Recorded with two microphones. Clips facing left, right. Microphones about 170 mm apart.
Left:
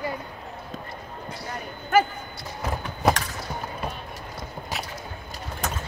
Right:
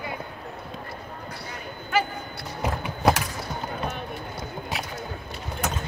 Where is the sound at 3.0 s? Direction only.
Centre (ahead or behind).